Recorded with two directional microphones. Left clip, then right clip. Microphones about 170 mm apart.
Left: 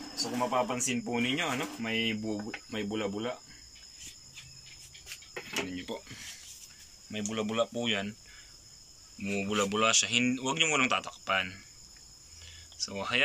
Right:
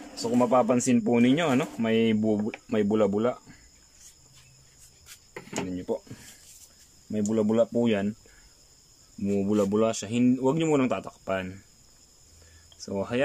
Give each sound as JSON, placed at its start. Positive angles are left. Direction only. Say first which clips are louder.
{"t": 0.5, "sound": "speech", "louder": "right 9 dB", "side_deg": -70}
{"t": 5.7, "sound": "speech", "louder": "right 8 dB", "side_deg": -50}
{"t": 7.1, "sound": "speech", "louder": "right 8 dB", "side_deg": -50}
{"t": 9.2, "sound": "speech", "louder": "right 5 dB", "side_deg": -40}
{"t": 12.7, "sound": "speech", "louder": "right 1 dB", "side_deg": -60}